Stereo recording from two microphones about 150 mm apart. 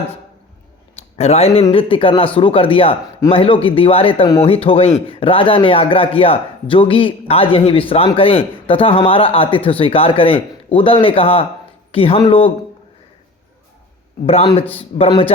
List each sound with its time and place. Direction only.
0.9 s speech: 45° left (ahead or behind)
14.7 s speech: 40° left (ahead or behind)